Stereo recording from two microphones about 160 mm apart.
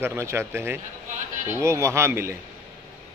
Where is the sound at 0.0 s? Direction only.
15° right (ahead or behind).